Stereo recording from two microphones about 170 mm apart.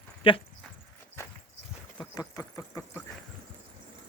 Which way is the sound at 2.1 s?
20° left (ahead or behind).